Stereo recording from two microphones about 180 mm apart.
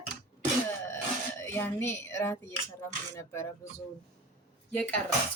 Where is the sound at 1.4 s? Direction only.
15° left (ahead or behind).